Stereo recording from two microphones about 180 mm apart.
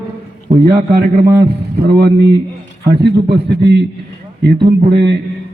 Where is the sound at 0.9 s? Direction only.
55° right (ahead or behind).